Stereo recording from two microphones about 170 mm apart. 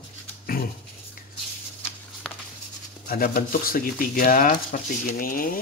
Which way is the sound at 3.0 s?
55° left (ahead or behind).